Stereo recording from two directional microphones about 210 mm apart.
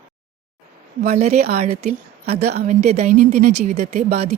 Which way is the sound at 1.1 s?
30° right (ahead or behind).